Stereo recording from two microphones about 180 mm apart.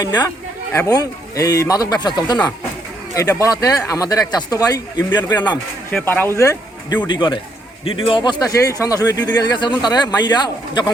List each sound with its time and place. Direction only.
0.0 s speech: 20° left (ahead or behind)
5.9 s speech: 5° left (ahead or behind); by 10.9 s 25° left (ahead or behind)